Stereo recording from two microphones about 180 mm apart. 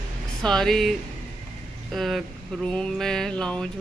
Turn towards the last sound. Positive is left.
turn(degrees=5)  # may be behind; listen again after turning